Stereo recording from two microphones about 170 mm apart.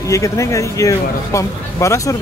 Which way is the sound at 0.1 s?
20° left (ahead or behind).